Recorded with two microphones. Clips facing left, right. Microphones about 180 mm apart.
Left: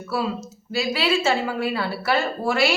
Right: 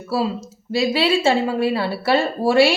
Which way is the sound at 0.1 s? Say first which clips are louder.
Right 4 dB; 30° right (ahead or behind).